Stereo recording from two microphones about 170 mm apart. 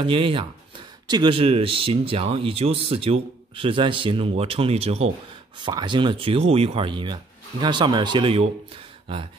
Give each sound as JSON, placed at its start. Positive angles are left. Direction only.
{"t": 0.0, "sound": "speech", "side_deg": -30}
{"t": 5.6, "sound": "speech", "side_deg": -25}